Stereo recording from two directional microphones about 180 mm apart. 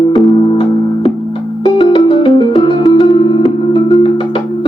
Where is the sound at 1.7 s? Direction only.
30° left (ahead or behind).